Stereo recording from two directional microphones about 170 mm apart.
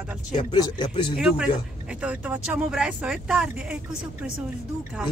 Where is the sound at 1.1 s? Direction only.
5° right (ahead or behind).